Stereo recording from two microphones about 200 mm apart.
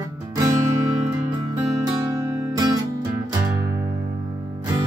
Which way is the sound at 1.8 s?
15° right (ahead or behind).